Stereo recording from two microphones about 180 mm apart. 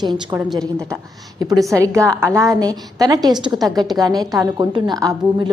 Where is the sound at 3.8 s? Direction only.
20° right (ahead or behind).